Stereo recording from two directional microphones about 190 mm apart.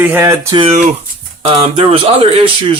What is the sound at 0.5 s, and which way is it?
Speech, 30° right (ahead or behind).